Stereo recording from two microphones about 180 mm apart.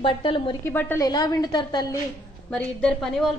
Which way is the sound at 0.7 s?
10° left (ahead or behind).